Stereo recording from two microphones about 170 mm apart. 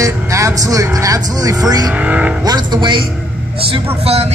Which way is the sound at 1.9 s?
5° right (ahead or behind).